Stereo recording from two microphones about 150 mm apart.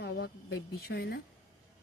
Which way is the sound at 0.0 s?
90° left.